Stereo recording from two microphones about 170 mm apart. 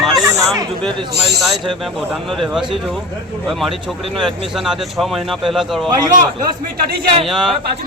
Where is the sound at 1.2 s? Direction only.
Centre (ahead or behind).